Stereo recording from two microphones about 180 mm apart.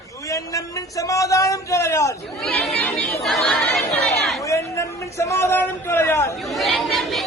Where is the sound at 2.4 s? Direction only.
5° left (ahead or behind).